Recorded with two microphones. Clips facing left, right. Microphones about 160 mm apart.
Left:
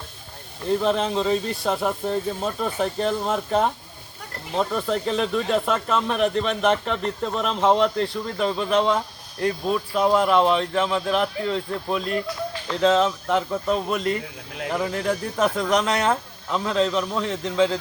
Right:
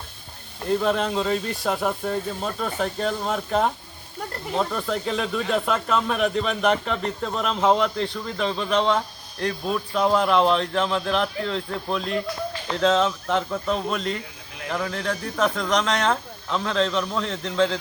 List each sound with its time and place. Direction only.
0.8 s speech: centre (ahead or behind)